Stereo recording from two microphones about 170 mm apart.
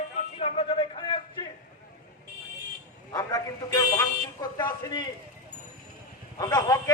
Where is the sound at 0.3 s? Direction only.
35° left (ahead or behind).